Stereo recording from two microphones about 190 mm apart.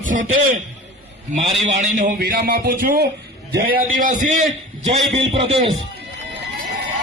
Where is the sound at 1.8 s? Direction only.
45° right (ahead or behind).